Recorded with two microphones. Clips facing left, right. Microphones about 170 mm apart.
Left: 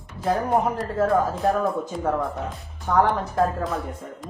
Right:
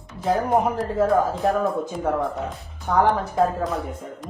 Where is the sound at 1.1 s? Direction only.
Centre (ahead or behind).